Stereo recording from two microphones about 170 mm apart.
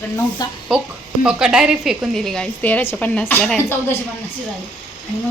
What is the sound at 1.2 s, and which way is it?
A woman's voice, 5° right (ahead or behind).